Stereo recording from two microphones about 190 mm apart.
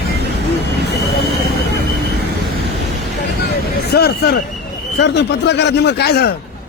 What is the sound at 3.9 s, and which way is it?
Speech, 55° left (ahead or behind).